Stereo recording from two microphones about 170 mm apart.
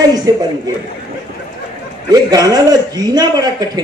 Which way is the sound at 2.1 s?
25° right (ahead or behind).